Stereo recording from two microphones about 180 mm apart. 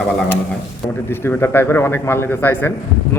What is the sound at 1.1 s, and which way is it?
A man's voice, 15° left (ahead or behind).